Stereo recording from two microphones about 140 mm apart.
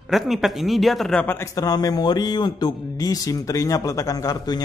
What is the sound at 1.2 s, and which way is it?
A man's voice, 20° left (ahead or behind).